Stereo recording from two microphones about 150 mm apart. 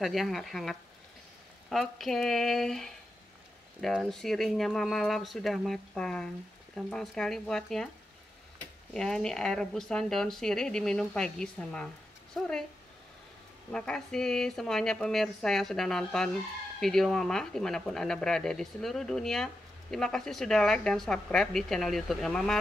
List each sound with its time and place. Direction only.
0.0 s speech: centre (ahead or behind)
8.9 s speech: 5° left (ahead or behind)
13.7 s speech: 5° left (ahead or behind)